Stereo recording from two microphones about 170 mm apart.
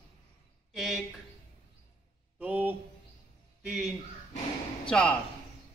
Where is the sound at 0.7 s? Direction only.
Centre (ahead or behind).